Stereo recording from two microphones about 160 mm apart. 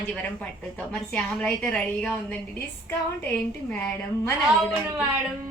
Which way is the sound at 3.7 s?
15° left (ahead or behind).